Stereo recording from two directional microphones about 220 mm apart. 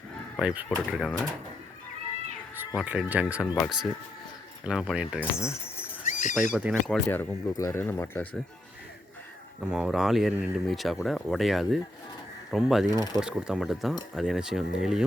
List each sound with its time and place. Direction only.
0.3 s speech: 5° right (ahead or behind)
2.6 s speech: 5° right (ahead or behind)
3.4 s speech: 10° left (ahead or behind)
4.6 s speech: 5° right (ahead or behind)
5.2 s keys jangling: 10° left (ahead or behind)
6.1 s a sound: 35° left (ahead or behind)
6.5 s speech: 5° right (ahead or behind)
9.7 s speech: centre (ahead or behind)
12.9 s speech: 20° left (ahead or behind)
13.1 s speech: centre (ahead or behind)